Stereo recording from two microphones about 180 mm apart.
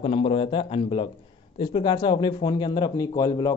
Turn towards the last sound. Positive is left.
turn(degrees=20)  # may be behind; listen again after turning